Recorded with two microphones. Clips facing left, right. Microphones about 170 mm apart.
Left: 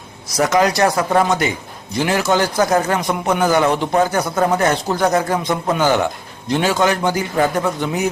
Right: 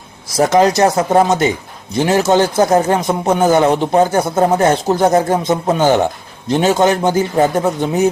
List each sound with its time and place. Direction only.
0.3 s a man's voice: 25° right (ahead or behind)